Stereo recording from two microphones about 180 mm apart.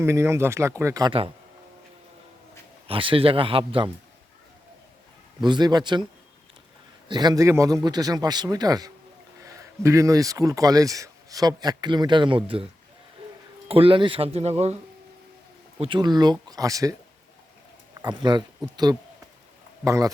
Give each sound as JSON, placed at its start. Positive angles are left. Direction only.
{"t": 0.0, "sound": "speech", "side_deg": -15}
{"t": 2.8, "sound": "a man's voice", "side_deg": -30}
{"t": 5.4, "sound": "a man's voice", "side_deg": -25}
{"t": 7.1, "sound": "a man's voice", "side_deg": -25}
{"t": 13.7, "sound": "speech", "side_deg": -30}
{"t": 15.8, "sound": "a man's voice", "side_deg": -25}
{"t": 18.0, "sound": "a man's voice", "side_deg": -25}